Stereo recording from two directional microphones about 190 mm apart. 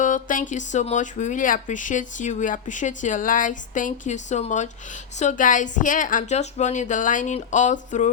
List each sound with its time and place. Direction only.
0.0 s speech: 45° left (ahead or behind)